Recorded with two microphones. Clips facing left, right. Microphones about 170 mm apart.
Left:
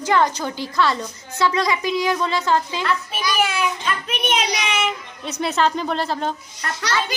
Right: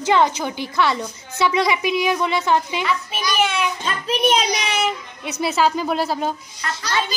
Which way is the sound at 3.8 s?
35° right (ahead or behind).